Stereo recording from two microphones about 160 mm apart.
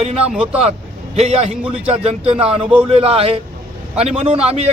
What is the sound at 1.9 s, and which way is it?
Speech, 40° right (ahead or behind).